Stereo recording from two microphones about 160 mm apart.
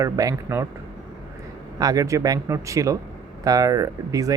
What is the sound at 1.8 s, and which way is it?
Speech, 20° right (ahead or behind).